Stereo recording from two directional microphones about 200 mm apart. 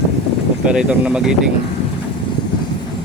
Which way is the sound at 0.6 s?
5° right (ahead or behind).